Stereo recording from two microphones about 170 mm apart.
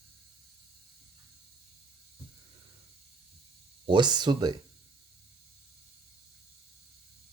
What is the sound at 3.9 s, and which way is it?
Speech, 25° right (ahead or behind).